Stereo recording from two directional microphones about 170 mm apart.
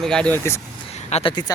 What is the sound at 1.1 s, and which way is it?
Speech, 35° left (ahead or behind).